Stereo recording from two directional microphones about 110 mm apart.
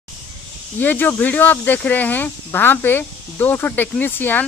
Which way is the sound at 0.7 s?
15° left (ahead or behind).